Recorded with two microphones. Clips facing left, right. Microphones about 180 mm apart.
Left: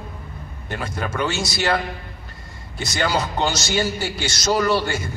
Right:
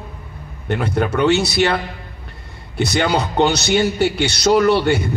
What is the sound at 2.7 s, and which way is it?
A man's voice, 60° right (ahead or behind).